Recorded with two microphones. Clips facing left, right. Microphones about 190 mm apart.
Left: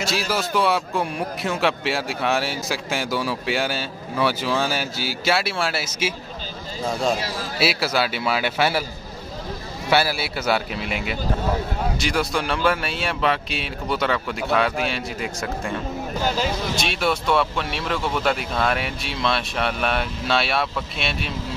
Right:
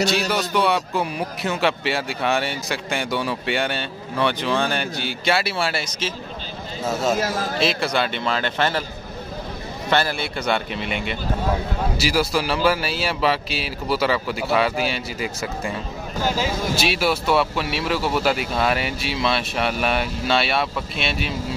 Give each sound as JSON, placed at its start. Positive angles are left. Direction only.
{"t": 0.0, "sound": "a man's voice", "side_deg": 0}
{"t": 6.8, "sound": "a man's voice", "side_deg": -5}
{"t": 7.2, "sound": "a man's voice", "side_deg": -50}
{"t": 7.5, "sound": "a man's voice", "side_deg": 5}
{"t": 9.8, "sound": "a man's voice", "side_deg": 10}